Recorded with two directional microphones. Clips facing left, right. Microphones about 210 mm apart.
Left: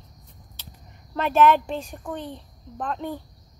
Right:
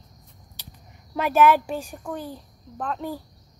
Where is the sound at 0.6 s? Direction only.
15° right (ahead or behind).